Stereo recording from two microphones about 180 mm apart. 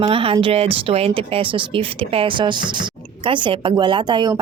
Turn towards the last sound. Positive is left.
turn(degrees=-25)  # may be behind; listen again after turning